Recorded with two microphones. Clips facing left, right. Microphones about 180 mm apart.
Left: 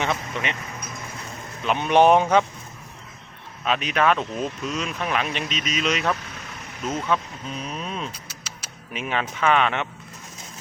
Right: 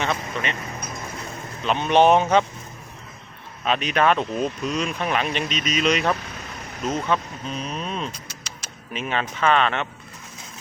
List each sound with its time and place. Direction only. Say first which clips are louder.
0.0 s speech: even; 15° left (ahead or behind)
1.6 s speech: even; 10° left (ahead or behind)
3.6 s speech: right 1 dB; 5° left (ahead or behind)
7.1 s speech: right 1 dB; 5° left (ahead or behind)